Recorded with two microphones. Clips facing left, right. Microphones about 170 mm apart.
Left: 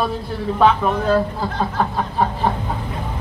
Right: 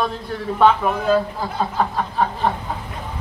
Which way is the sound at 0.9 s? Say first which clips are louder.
Left 1 dB; 10° right (ahead or behind).